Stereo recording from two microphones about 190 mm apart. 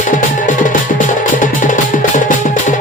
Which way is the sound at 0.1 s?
45° left (ahead or behind).